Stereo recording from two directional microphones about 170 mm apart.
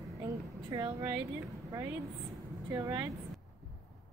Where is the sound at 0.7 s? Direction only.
30° right (ahead or behind).